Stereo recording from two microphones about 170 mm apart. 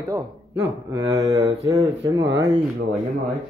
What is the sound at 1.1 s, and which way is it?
Speech, 20° right (ahead or behind).